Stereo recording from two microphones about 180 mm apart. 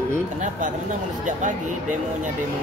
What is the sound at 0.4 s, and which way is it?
Speech, 45° right (ahead or behind).